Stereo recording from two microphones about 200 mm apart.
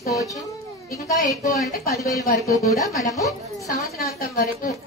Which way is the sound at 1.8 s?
15° left (ahead or behind).